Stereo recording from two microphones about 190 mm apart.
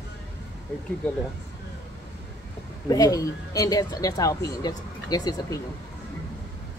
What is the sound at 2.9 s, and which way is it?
Speech, 20° left (ahead or behind).